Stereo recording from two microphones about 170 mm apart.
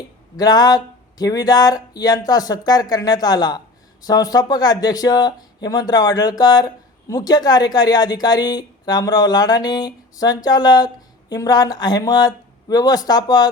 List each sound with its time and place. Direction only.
0.3 s speech: 25° left (ahead or behind)